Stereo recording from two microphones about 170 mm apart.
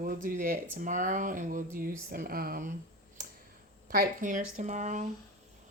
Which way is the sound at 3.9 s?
55° right (ahead or behind).